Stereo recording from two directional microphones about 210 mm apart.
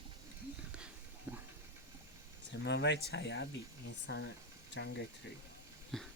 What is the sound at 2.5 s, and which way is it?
Speech, 55° left (ahead or behind).